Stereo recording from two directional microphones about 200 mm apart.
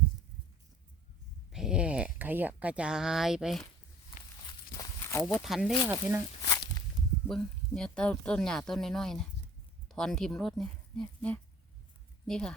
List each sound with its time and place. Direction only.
1.5 s speech: 5° right (ahead or behind)
4.4 s walk: 15° left (ahead or behind)
5.2 s speech: centre (ahead or behind)
5.9 s speech: 10° right (ahead or behind)
6.4 s walk: 20° left (ahead or behind)
7.3 s speech: 5° left (ahead or behind)